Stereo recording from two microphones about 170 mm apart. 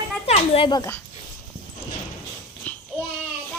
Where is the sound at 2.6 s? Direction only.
10° left (ahead or behind).